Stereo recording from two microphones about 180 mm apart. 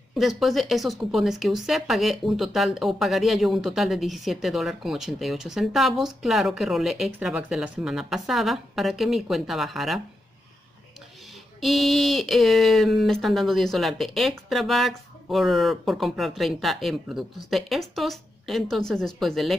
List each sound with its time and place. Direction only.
0.1 s speech: centre (ahead or behind)
11.6 s speech: centre (ahead or behind)